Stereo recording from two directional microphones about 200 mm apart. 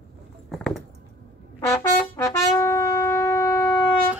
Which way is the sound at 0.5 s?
5° left (ahead or behind).